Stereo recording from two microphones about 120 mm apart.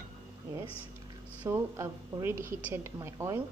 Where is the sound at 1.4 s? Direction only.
20° right (ahead or behind).